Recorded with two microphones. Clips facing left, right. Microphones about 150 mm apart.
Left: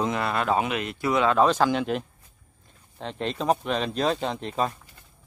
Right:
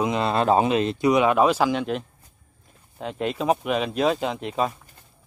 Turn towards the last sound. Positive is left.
turn(degrees=-5)  # may be behind; listen again after turning